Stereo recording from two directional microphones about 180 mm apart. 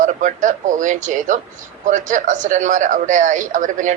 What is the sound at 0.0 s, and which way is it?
Speech, 45° right (ahead or behind).